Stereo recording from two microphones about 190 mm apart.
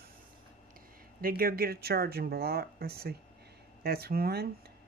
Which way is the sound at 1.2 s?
50° right (ahead or behind).